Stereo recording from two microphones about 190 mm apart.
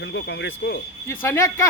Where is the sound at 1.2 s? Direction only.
15° left (ahead or behind).